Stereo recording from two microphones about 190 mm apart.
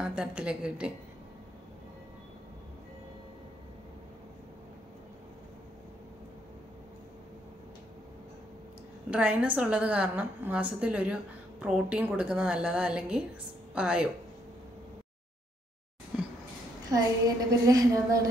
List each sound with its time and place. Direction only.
0.0 s a woman's voice: 5° right (ahead or behind)
9.1 s a woman's voice: 5° right (ahead or behind)
16.1 s a sound: 5° right (ahead or behind)
17.5 s a woman's voice: 20° right (ahead or behind)